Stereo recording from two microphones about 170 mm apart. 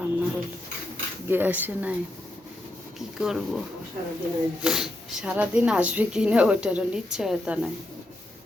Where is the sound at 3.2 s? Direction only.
Centre (ahead or behind).